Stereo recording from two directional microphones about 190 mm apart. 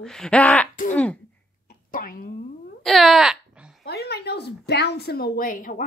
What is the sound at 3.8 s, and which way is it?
A woman's voice, 60° left (ahead or behind).